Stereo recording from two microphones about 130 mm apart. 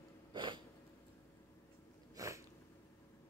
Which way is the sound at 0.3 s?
40° right (ahead or behind).